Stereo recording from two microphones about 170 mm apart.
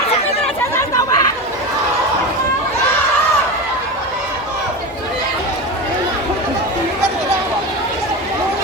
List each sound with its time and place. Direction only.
0.8 s chatter: 20° left (ahead or behind)